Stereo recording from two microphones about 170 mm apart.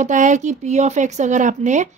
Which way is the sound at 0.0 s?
45° right (ahead or behind).